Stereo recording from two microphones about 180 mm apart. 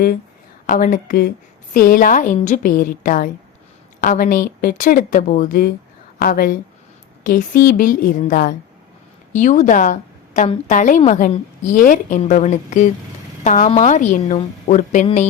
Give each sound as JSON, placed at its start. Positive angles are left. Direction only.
{"t": 0.7, "sound": "a woman's voice", "side_deg": 50}